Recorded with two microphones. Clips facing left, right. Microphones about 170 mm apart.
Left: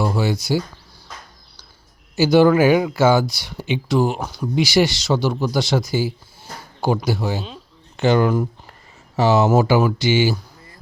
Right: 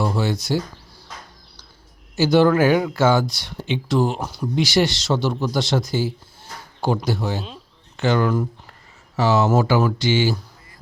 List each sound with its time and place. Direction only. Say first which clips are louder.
0.0 s speech: left 1 dB; 5° left (ahead or behind)
2.1 s speech: left 2 dB; 5° left (ahead or behind)
7.9 s speech: left 3 dB; 15° left (ahead or behind)